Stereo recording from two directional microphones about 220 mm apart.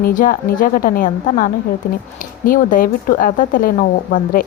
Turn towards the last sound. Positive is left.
turn(degrees=40)  # may be behind; listen again after turning